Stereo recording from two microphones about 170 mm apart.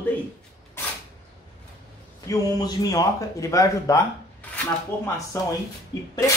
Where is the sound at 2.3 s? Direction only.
25° left (ahead or behind).